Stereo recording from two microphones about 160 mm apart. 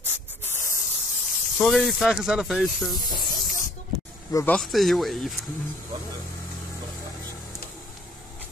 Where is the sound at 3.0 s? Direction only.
25° left (ahead or behind).